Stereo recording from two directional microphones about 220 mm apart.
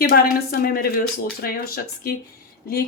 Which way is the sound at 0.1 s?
45° left (ahead or behind).